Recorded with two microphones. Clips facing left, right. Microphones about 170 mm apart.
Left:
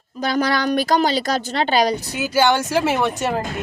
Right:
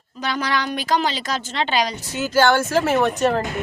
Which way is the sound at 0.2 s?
40° left (ahead or behind).